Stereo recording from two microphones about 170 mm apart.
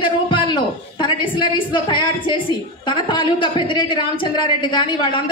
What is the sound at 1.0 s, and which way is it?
A woman's voice, 30° left (ahead or behind).